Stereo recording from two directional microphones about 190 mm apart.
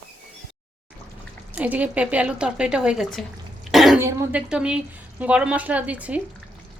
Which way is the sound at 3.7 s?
Centre (ahead or behind).